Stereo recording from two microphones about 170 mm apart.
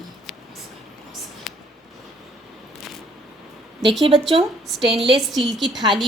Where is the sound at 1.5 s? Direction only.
Centre (ahead or behind).